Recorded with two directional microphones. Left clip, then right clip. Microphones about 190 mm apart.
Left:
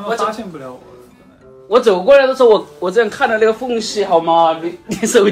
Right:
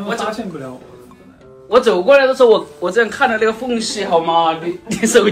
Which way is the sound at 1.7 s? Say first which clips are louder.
Left 1 dB; 50° left (ahead or behind).